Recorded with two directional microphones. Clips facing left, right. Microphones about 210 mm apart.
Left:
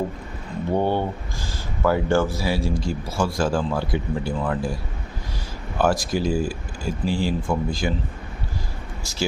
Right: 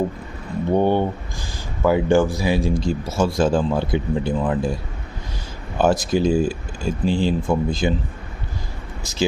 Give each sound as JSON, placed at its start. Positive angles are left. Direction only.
{"t": 0.7, "sound": "speech", "side_deg": -15}
{"t": 5.8, "sound": "speech", "side_deg": -20}